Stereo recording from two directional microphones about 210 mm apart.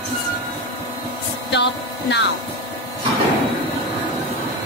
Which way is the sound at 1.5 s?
55° left (ahead or behind).